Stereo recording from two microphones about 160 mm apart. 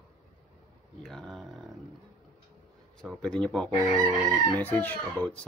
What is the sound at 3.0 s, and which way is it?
Speech, 5° left (ahead or behind).